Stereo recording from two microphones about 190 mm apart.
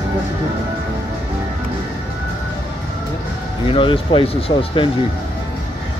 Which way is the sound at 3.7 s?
25° left (ahead or behind).